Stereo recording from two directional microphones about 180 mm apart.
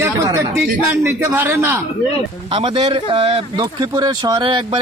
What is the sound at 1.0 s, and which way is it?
Speech, 15° right (ahead or behind).